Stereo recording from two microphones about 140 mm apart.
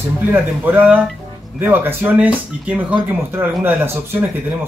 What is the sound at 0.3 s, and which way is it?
Speech, 15° right (ahead or behind).